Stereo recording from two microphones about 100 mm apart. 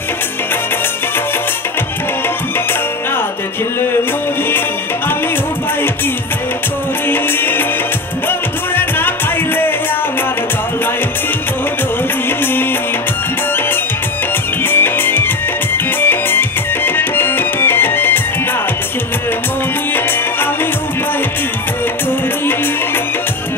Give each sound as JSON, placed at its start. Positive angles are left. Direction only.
{"t": 7.1, "sound": "music", "side_deg": 20}
{"t": 14.7, "sound": "music", "side_deg": 20}